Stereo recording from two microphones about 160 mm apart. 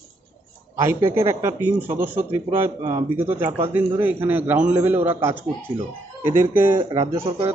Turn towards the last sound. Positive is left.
turn(degrees=-20)  # may be behind; listen again after turning